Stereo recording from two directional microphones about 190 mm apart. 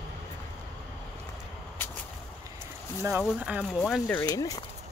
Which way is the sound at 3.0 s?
10° right (ahead or behind).